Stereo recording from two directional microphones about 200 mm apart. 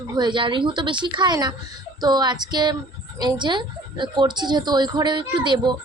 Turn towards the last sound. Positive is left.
turn(degrees=-25)  # may be behind; listen again after turning